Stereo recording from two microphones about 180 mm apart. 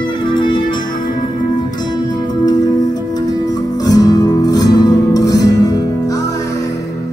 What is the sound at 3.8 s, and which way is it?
Music, 20° left (ahead or behind).